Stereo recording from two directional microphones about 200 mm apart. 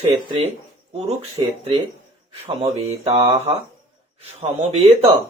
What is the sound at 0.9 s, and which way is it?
Mantra, 30° right (ahead or behind).